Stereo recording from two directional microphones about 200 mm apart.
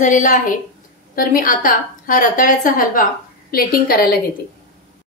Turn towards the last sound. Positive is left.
turn(degrees=50)  # may be behind; listen again after turning